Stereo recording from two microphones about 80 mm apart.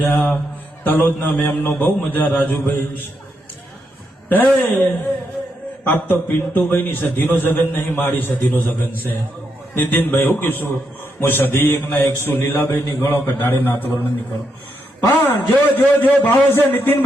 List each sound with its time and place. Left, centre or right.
0.0 s a man's voice: left
4.3 s a man's voice: left
15.1 s a man's voice: left